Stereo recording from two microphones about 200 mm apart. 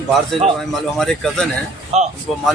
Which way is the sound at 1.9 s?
30° right (ahead or behind).